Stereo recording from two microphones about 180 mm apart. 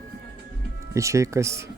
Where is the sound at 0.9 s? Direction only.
15° right (ahead or behind).